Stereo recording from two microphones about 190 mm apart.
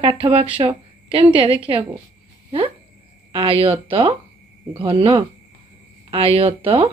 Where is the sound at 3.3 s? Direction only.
30° right (ahead or behind).